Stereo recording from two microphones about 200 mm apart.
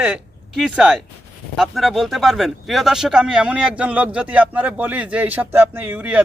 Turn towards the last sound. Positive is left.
turn(degrees=-5)  # may be behind; listen again after turning